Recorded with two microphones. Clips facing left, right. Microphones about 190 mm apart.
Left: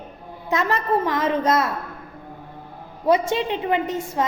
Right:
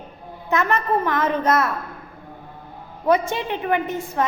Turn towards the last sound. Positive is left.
turn(degrees=20)  # may be behind; listen again after turning